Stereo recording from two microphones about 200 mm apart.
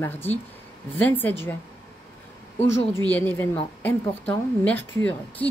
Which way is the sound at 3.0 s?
10° left (ahead or behind).